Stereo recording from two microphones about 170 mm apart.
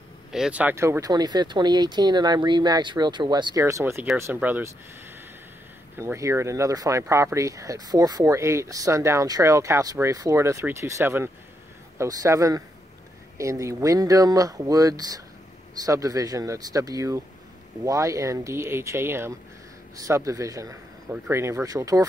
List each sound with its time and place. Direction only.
0.3 s speech: 5° right (ahead or behind)
5.9 s speech: 15° right (ahead or behind)